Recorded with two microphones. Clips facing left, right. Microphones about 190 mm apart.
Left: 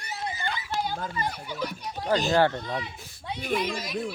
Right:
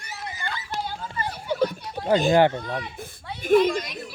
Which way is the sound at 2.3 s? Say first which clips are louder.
Right 4 dB; 15° right (ahead or behind).